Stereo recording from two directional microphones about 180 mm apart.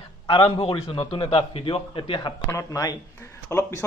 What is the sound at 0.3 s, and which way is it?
A man's voice, 30° left (ahead or behind).